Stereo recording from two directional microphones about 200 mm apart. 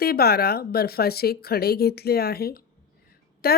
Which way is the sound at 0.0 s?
50° left (ahead or behind).